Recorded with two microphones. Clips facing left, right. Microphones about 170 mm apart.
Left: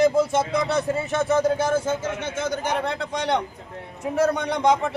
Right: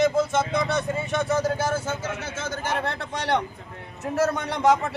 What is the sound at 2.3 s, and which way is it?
Speech, 15° left (ahead or behind).